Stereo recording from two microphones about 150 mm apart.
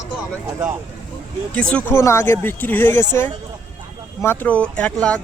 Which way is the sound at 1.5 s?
5° left (ahead or behind).